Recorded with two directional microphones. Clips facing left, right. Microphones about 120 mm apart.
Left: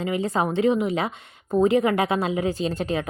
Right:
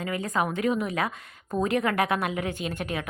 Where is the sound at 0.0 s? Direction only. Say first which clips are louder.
Left 4 dB; 25° left (ahead or behind).